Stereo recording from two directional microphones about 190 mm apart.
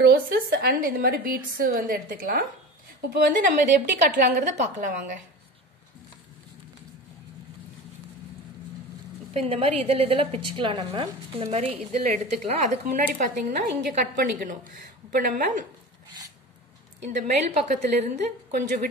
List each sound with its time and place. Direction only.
0.0 s a woman's voice: 60° right (ahead or behind)
9.3 s a woman's voice: 30° right (ahead or behind)
17.2 s a woman's voice: 40° right (ahead or behind)